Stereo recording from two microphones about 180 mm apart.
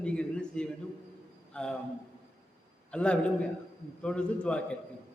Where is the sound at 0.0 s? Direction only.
5° left (ahead or behind).